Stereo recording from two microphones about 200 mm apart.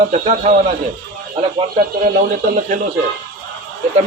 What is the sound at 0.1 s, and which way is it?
Speech, 35° right (ahead or behind).